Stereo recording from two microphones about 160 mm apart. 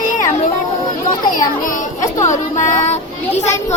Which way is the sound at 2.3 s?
50° left (ahead or behind).